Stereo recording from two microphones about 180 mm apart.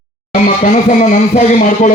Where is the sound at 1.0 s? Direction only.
40° left (ahead or behind).